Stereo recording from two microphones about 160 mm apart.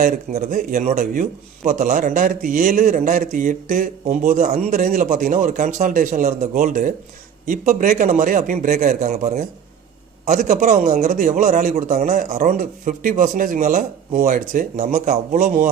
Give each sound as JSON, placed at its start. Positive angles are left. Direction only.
{"t": 0.0, "sound": "speech", "side_deg": -60}
{"t": 10.2, "sound": "speech", "side_deg": -60}